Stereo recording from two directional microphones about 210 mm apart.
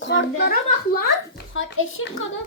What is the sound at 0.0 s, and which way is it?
A woman's voice, 60° left (ahead or behind).